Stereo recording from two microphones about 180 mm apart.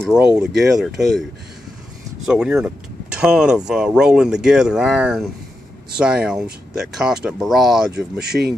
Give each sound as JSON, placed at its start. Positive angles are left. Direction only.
{"t": 0.4, "sound": "speech", "side_deg": 0}
{"t": 2.2, "sound": "speech", "side_deg": -5}
{"t": 8.3, "sound": "speech", "side_deg": -65}